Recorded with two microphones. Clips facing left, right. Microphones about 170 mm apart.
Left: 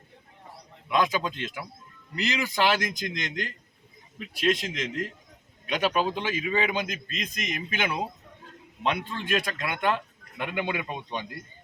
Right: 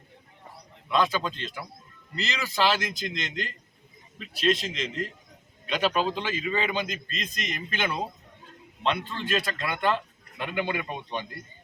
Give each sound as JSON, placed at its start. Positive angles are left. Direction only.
{"t": 0.9, "sound": "a man's voice", "side_deg": 15}